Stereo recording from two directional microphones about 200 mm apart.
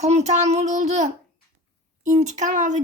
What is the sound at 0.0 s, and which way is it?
A child's voice, 35° right (ahead or behind).